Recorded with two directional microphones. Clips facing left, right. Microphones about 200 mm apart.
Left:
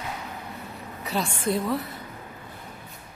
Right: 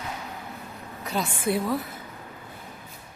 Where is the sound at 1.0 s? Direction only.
Centre (ahead or behind).